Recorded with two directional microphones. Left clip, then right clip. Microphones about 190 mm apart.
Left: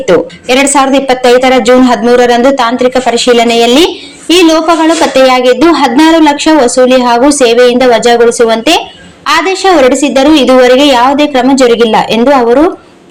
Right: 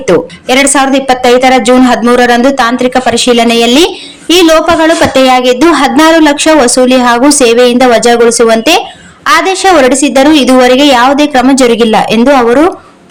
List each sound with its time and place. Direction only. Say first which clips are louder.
0.1 s a woman's voice: even; 20° right (ahead or behind)